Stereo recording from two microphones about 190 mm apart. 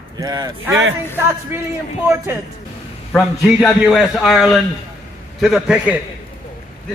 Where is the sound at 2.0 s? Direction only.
10° right (ahead or behind).